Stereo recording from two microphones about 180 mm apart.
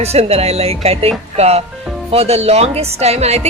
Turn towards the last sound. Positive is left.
turn(degrees=-35)  # may be behind; listen again after turning